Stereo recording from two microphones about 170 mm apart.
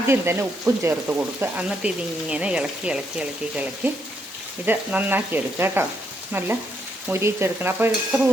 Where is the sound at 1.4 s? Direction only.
5° right (ahead or behind).